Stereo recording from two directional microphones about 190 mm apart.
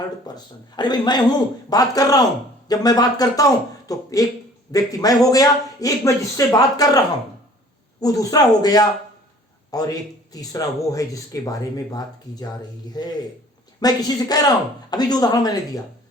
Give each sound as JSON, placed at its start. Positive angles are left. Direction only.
{"t": 0.3, "sound": "speech", "side_deg": 20}
{"t": 8.0, "sound": "speech", "side_deg": 20}